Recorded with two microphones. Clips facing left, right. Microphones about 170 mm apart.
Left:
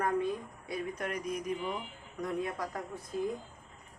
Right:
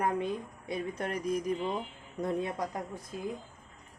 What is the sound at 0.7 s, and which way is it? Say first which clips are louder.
Speech: right 2 dB; 30° right (ahead or behind).